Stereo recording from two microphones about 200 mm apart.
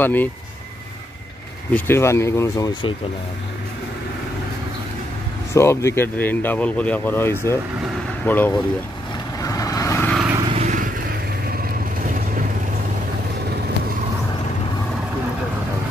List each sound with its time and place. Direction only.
0.0 s speech: 10° left (ahead or behind)
1.7 s speech: 10° left (ahead or behind)
5.5 s speech: 15° left (ahead or behind)
9.4 s vehicle: 15° left (ahead or behind)
10.5 s vehicle: 35° right (ahead or behind)